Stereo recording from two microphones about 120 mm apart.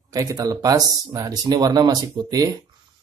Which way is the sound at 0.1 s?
30° right (ahead or behind).